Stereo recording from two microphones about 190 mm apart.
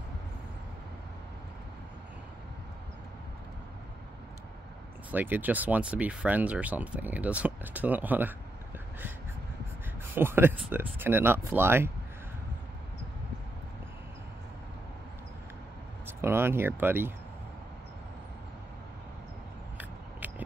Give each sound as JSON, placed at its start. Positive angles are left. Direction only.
{"t": 5.1, "sound": "speech", "side_deg": -10}
{"t": 10.1, "sound": "speech", "side_deg": -10}
{"t": 16.1, "sound": "speech", "side_deg": -10}
{"t": 19.8, "sound": "a sound", "side_deg": -10}